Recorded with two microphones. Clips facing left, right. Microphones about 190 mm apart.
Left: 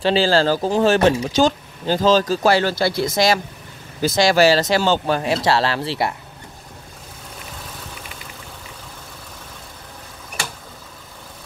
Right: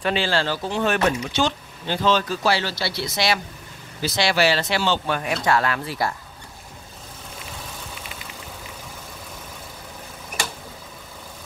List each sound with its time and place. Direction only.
0.0 s speech: 35° left (ahead or behind)